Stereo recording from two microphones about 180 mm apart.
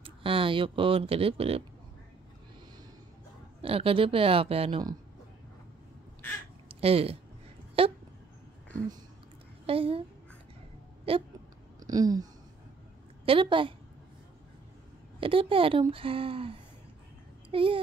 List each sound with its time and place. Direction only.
0.0 s speech: 30° right (ahead or behind)
3.6 s speech: 30° right (ahead or behind)
6.7 s speech: 30° right (ahead or behind)
9.7 s speech: 30° right (ahead or behind)
11.1 s speech: 35° right (ahead or behind)
11.8 s a sound: 20° right (ahead or behind)
13.2 s speech: 30° right (ahead or behind)
15.1 s speech: 30° right (ahead or behind)